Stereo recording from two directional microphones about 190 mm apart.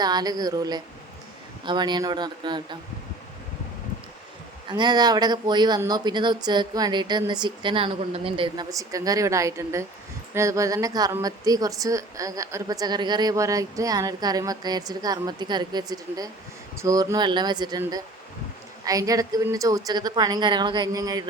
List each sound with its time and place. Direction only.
0.0 s a woman's voice: 20° right (ahead or behind)
4.7 s a woman's voice: 20° right (ahead or behind)